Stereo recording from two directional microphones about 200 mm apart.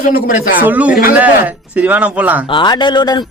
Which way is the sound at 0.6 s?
10° right (ahead or behind).